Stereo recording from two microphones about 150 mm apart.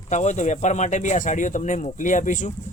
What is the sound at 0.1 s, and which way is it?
Speech, 50° left (ahead or behind).